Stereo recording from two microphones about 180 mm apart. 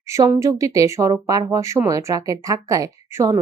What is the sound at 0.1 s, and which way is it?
Speech, 15° right (ahead or behind).